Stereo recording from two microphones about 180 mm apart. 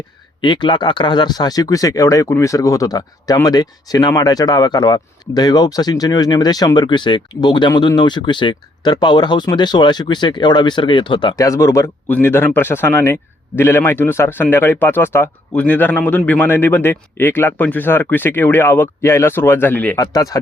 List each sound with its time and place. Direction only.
0.4 s a man's voice: 25° left (ahead or behind); by 20.0 s 10° left (ahead or behind)
20.0 s speech: 20° left (ahead or behind)